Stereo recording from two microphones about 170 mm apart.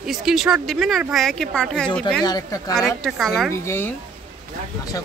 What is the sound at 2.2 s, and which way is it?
Speech, 20° left (ahead or behind).